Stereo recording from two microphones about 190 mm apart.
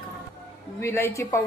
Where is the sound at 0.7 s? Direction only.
10° left (ahead or behind).